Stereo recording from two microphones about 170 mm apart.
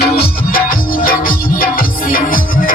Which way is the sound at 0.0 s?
60° left (ahead or behind).